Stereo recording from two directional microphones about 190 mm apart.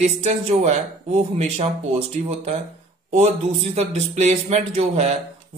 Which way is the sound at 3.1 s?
35° right (ahead or behind).